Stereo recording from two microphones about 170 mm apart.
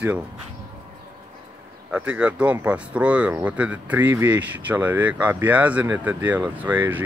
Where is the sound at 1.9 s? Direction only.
5° right (ahead or behind).